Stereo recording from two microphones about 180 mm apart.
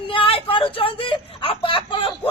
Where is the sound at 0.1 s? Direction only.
30° left (ahead or behind).